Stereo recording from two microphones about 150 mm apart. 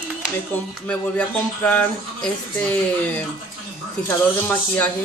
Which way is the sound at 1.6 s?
10° left (ahead or behind).